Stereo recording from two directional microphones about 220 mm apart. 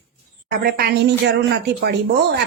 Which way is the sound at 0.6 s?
45° right (ahead or behind).